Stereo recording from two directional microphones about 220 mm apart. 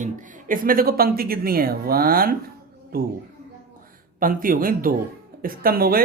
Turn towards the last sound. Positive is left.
turn(degrees=-45)  # may be behind; listen again after turning